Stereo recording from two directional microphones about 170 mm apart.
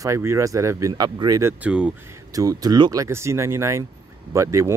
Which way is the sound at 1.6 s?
5° right (ahead or behind).